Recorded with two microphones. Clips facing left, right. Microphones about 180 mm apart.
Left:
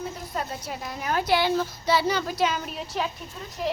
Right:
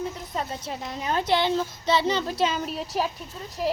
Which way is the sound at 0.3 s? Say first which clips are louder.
Even; 25° right (ahead or behind).